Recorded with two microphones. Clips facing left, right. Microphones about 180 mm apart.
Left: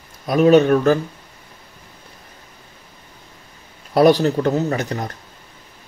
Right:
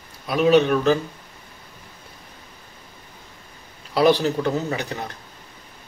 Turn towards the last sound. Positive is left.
turn(degrees=40)  # may be behind; listen again after turning